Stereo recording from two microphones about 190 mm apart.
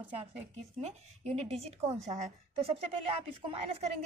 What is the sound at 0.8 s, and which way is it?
A woman's voice, 35° right (ahead or behind).